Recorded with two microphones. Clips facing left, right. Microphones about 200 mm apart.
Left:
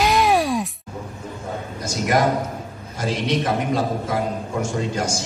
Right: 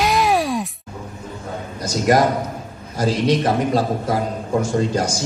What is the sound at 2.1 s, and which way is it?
A man's voice, 40° right (ahead or behind).